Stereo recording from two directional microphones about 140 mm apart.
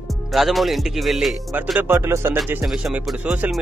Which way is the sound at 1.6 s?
10° right (ahead or behind).